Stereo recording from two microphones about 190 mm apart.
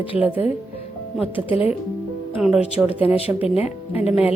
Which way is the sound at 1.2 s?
30° left (ahead or behind).